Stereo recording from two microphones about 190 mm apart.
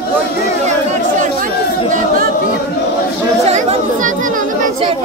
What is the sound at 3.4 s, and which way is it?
Chatter, 35° right (ahead or behind).